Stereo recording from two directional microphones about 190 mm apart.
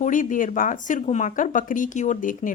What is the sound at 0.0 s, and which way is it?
Speech, 45° left (ahead or behind).